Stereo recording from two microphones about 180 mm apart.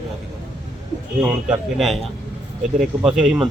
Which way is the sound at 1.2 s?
5° right (ahead or behind).